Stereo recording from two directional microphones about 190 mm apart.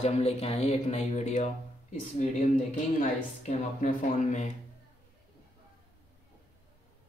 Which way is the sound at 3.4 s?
40° left (ahead or behind).